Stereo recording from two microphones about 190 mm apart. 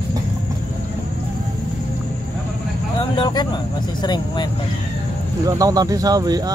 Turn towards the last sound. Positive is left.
turn(degrees=-20)  # may be behind; listen again after turning